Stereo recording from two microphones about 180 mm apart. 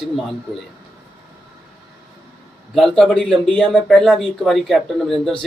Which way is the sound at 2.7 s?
Centre (ahead or behind).